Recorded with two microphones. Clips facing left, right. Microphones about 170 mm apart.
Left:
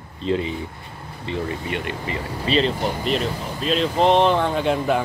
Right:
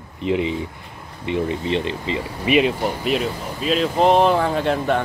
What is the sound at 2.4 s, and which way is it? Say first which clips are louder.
Speech: right 3 dB; 10° right (ahead or behind).